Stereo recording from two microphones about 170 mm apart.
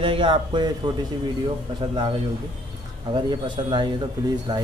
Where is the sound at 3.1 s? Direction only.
30° right (ahead or behind).